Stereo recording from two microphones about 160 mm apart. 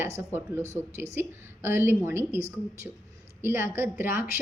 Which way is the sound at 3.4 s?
15° right (ahead or behind).